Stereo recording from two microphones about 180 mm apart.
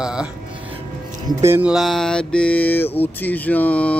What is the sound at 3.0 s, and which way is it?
Speech, 10° left (ahead or behind).